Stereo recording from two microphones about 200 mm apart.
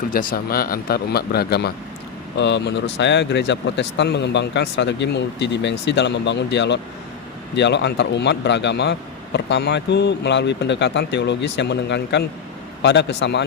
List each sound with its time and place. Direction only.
0.1 s a man's voice: 45° left (ahead or behind); by 13.4 s 60° left (ahead or behind)